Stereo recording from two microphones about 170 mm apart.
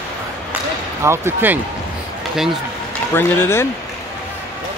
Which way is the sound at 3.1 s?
15° left (ahead or behind).